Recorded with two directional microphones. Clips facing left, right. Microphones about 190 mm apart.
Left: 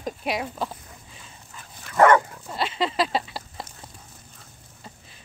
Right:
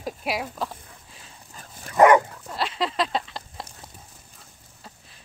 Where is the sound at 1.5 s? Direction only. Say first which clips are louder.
Right 3 dB; 40° right (ahead or behind).